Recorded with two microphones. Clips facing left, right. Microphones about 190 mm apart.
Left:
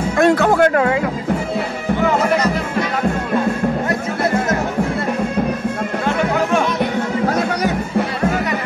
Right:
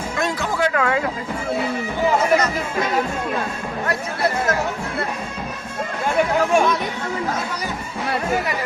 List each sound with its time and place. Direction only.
0.2 s music: 60° left (ahead or behind)